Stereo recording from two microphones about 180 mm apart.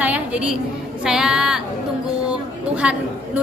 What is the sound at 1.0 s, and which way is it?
Speech, 5° right (ahead or behind).